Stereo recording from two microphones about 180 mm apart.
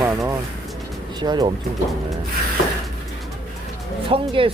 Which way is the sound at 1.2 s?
25° right (ahead or behind).